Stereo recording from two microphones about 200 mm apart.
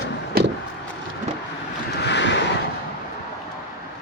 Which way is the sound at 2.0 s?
60° left (ahead or behind).